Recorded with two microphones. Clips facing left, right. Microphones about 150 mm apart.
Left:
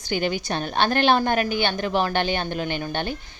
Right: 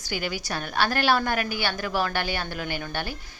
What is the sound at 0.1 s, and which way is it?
A woman's voice, 25° left (ahead or behind).